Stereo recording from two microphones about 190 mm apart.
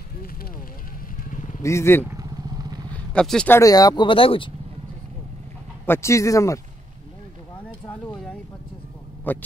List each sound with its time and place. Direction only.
1.6 s speech: 15° left (ahead or behind)
2.0 s vehicle: 20° right (ahead or behind)
2.9 s speech: 5° left (ahead or behind); by 4.5 s 25° left (ahead or behind)
5.9 s speech: 15° left (ahead or behind)
7.8 s a sound: 5° left (ahead or behind)
9.3 s speech: 10° left (ahead or behind)